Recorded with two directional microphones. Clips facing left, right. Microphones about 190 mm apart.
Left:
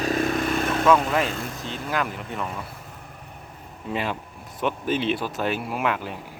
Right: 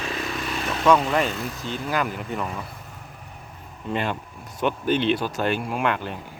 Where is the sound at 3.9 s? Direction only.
Centre (ahead or behind).